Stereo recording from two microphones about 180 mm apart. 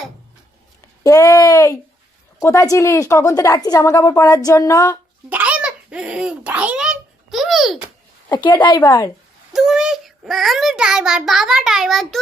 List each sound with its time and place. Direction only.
1.0 s a woman's voice: 20° left (ahead or behind)
5.3 s a sound: 5° right (ahead or behind)
8.3 s a woman's voice: 25° left (ahead or behind)
9.5 s a child's voice: centre (ahead or behind)